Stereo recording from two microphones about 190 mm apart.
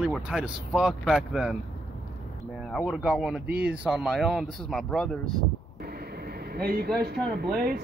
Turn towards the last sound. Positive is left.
turn(degrees=-55)  # may be behind; listen again after turning